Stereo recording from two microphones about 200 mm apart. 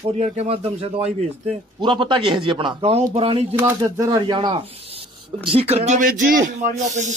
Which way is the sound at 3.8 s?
20° right (ahead or behind).